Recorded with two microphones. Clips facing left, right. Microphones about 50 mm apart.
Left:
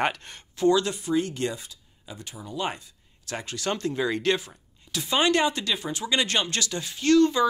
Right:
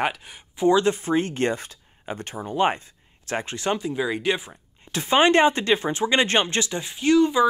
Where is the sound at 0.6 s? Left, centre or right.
Right.